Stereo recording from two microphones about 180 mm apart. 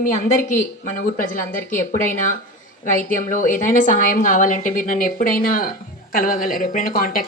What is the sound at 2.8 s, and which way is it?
A woman's voice, 45° left (ahead or behind).